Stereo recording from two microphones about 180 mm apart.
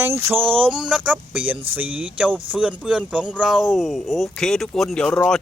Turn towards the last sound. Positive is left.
turn(degrees=5)  # may be behind; listen again after turning